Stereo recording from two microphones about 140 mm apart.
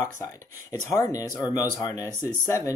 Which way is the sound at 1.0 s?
25° left (ahead or behind).